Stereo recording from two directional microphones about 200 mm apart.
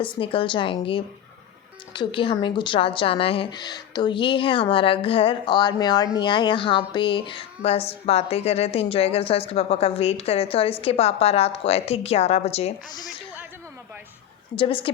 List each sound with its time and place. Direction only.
0.0 s a woman's voice: 25° left (ahead or behind)
14.5 s a woman's voice: 25° left (ahead or behind)